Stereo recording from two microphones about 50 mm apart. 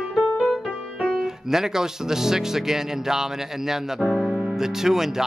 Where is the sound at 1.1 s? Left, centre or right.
Centre.